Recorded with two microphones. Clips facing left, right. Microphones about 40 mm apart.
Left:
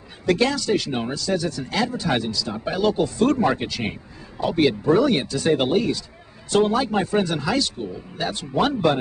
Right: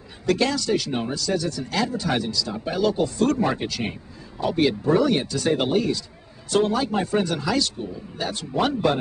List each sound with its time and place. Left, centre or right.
0.3 s speech: centre